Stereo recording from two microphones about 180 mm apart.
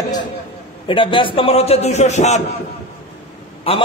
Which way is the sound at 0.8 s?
30° left (ahead or behind).